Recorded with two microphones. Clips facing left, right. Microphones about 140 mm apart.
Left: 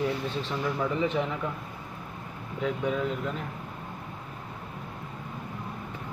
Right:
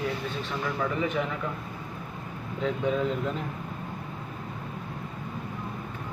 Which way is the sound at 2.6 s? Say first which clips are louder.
Right 2 dB; 10° left (ahead or behind).